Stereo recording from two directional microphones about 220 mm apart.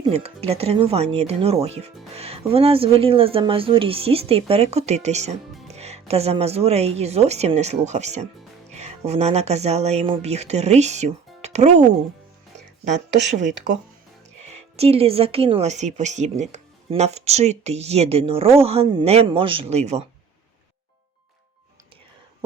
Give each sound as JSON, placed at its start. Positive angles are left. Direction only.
{"t": 0.1, "sound": "speech", "side_deg": -25}
{"t": 14.4, "sound": "speech", "side_deg": -30}